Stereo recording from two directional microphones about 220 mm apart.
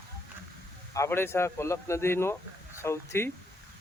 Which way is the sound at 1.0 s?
10° left (ahead or behind).